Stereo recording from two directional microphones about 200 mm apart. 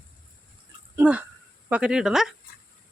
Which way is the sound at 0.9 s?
5° right (ahead or behind).